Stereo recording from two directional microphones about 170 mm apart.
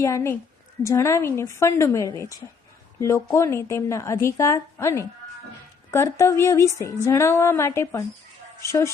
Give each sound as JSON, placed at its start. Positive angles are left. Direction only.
{"t": 0.0, "sound": "a woman's voice", "side_deg": 15}